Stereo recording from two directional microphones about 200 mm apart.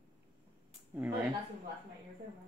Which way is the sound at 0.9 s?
10° right (ahead or behind).